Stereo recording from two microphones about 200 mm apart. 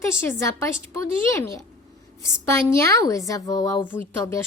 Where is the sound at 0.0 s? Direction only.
15° left (ahead or behind).